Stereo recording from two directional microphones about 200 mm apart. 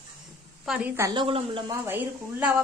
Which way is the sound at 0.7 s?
10° right (ahead or behind).